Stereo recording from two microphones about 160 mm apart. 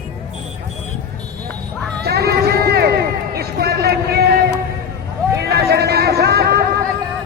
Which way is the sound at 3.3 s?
80° right.